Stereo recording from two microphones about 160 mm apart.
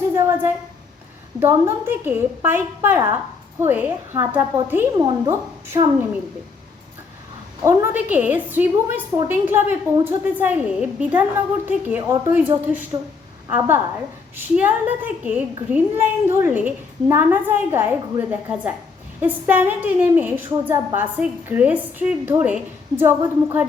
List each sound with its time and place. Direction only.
0.1 s a sound: 15° right (ahead or behind)
1.4 s a woman's voice: 15° right (ahead or behind)
4.9 s speech: 25° right (ahead or behind)
7.6 s a woman's voice: 15° right (ahead or behind)